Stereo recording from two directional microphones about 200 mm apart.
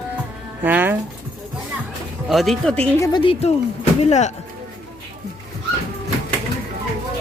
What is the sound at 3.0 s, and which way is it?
Speech, 25° left (ahead or behind).